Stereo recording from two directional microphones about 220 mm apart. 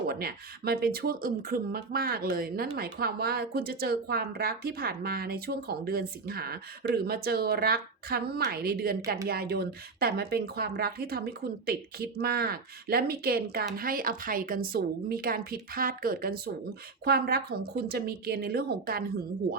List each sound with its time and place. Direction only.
0.1 s a woman's voice: 45° right (ahead or behind)